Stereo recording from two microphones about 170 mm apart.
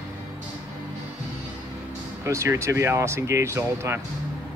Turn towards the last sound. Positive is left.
turn(degrees=-15)  # may be behind; listen again after turning